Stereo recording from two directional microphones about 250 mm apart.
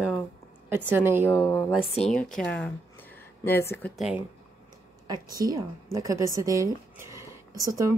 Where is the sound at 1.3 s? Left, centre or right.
Centre.